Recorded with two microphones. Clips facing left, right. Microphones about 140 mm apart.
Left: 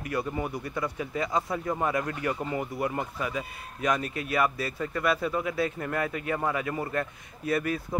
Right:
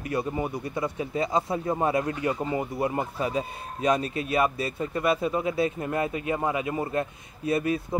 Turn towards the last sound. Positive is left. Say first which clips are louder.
# right 3 dB
turn(degrees=-20)  # may be behind; listen again after turning